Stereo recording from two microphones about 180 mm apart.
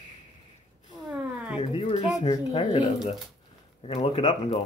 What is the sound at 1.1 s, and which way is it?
Cat, 5° right (ahead or behind).